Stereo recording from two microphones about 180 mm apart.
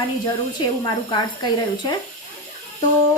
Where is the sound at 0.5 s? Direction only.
25° left (ahead or behind).